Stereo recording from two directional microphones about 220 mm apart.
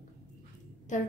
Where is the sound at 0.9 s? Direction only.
35° left (ahead or behind).